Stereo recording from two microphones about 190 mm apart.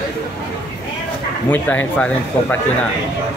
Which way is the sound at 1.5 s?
10° left (ahead or behind).